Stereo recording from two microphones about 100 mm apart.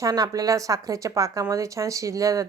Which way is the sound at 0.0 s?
35° right (ahead or behind).